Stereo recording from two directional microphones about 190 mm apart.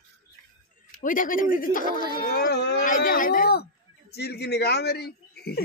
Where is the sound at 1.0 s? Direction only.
45° left (ahead or behind).